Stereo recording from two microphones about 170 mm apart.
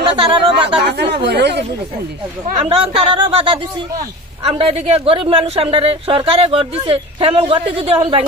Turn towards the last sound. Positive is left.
turn(degrees=-35)  # may be behind; listen again after turning